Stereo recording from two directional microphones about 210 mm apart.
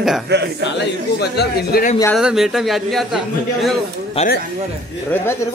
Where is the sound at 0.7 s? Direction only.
50° left (ahead or behind).